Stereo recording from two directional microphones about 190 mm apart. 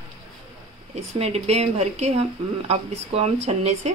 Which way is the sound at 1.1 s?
35° right (ahead or behind).